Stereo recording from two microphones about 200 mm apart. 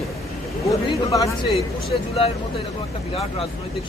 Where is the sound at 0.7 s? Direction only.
15° left (ahead or behind).